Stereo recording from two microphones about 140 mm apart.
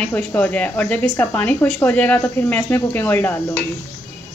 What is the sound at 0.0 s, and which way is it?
Speech, 10° left (ahead or behind).